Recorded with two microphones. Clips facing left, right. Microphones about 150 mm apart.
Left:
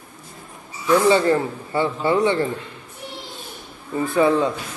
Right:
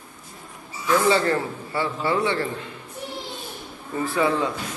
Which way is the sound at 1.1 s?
20° left (ahead or behind).